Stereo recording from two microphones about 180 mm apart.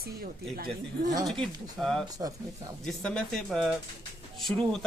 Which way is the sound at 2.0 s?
20° right (ahead or behind).